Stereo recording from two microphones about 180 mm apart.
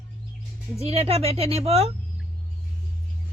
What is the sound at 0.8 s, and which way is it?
Speech, 35° right (ahead or behind).